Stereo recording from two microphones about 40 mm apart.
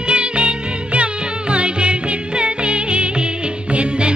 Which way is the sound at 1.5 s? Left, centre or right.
Right.